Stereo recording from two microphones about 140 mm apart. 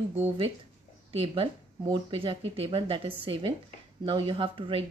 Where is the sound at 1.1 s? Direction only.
40° right (ahead or behind).